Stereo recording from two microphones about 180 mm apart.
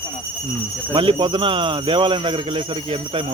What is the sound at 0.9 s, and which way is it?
A man's voice, 25° right (ahead or behind).